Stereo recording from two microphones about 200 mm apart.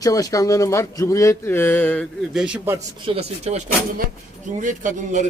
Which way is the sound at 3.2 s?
35° right (ahead or behind).